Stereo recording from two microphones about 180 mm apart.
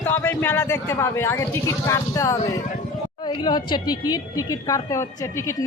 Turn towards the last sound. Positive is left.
turn(degrees=20)  # may be behind; listen again after turning